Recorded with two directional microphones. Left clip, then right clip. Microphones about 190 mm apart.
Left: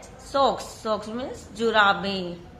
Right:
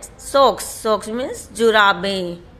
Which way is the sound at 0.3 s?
45° right (ahead or behind).